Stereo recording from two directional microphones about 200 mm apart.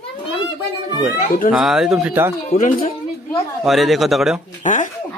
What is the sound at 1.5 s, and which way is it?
Speech, 5° right (ahead or behind).